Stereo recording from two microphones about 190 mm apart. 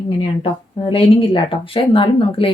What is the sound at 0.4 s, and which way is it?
Speech, 25° left (ahead or behind).